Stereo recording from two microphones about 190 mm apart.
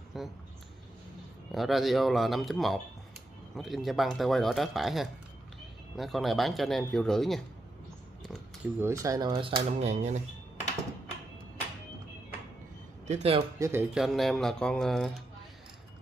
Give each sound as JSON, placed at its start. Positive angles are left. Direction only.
{"t": 0.1, "sound": "speech", "side_deg": 0}
{"t": 1.5, "sound": "speech", "side_deg": 0}
{"t": 8.7, "sound": "speech", "side_deg": -15}
{"t": 13.0, "sound": "a man's voice", "side_deg": -35}
{"t": 13.6, "sound": "speech", "side_deg": -10}
{"t": 13.9, "sound": "speech", "side_deg": 0}